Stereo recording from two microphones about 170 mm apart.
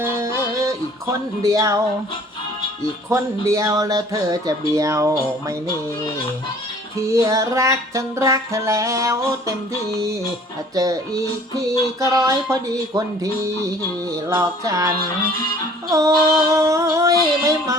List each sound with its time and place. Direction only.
0.0 s music: 15° right (ahead or behind)
3.1 s speech: 20° right (ahead or behind)
7.1 s music: 20° right (ahead or behind)
10.8 s speech: 20° right (ahead or behind)
14.1 s speech: 20° right (ahead or behind)